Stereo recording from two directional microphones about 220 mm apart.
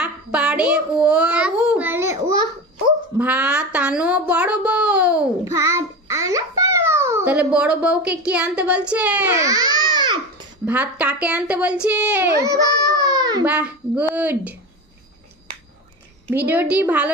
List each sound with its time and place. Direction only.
0.0 s child singing: 5° right (ahead or behind)
2.1 s a sound: 20° right (ahead or behind)
3.2 s speech: 5° right (ahead or behind)
10.6 s speech: 5° right (ahead or behind)
13.1 s baby cry: 20° right (ahead or behind)
13.5 s speech: 5° right (ahead or behind)
16.3 s speech: 10° right (ahead or behind)